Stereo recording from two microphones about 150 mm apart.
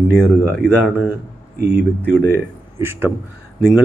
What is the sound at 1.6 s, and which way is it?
Speech, 90° right.